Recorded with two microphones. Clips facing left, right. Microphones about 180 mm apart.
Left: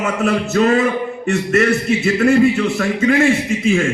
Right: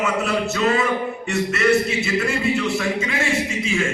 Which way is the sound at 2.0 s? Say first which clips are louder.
Left 9 dB; 55° left (ahead or behind).